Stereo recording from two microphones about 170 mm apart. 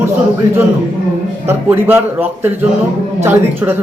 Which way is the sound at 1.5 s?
15° right (ahead or behind).